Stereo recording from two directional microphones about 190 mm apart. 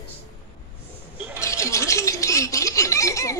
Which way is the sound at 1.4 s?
15° left (ahead or behind).